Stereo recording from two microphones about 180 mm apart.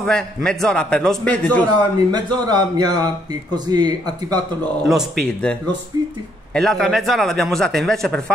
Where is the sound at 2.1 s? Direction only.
25° right (ahead or behind).